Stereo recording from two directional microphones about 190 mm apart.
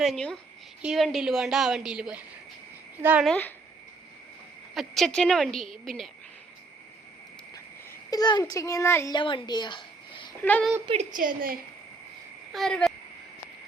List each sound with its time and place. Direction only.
0.0 s a woman's voice: centre (ahead or behind)
3.2 s speech: 5° left (ahead or behind)
4.7 s a woman's voice: centre (ahead or behind)
7.5 s speech: 20° left (ahead or behind)
9.1 s a woman's voice: 25° left (ahead or behind)
10.4 s speech: 10° left (ahead or behind)
11.1 s a woman's voice: 45° right (ahead or behind)
12.5 s a woman's voice: 5° left (ahead or behind)